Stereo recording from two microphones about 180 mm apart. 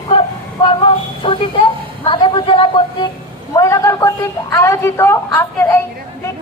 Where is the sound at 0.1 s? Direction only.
30° left (ahead or behind); by 5.8 s 15° left (ahead or behind).